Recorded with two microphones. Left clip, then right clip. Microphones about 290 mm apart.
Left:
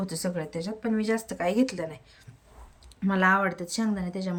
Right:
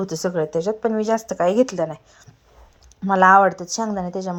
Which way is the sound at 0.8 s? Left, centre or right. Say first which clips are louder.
Right 6 dB; right.